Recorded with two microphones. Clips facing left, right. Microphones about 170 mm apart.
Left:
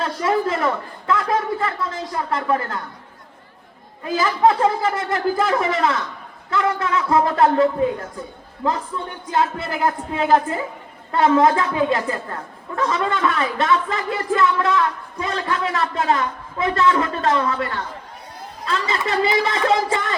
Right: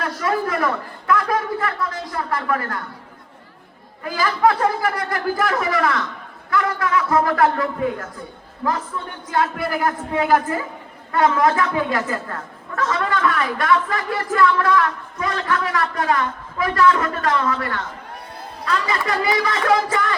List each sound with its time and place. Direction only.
0.0 s a man's voice: 25° left (ahead or behind)
4.0 s a man's voice: 25° left (ahead or behind)
9.3 s a man's voice: 25° left (ahead or behind)